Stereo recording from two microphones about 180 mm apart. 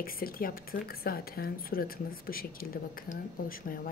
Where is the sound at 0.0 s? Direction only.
55° left (ahead or behind).